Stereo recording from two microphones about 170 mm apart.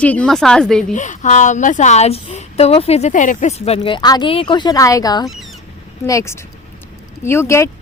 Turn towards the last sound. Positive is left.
turn(degrees=15)  # may be behind; listen again after turning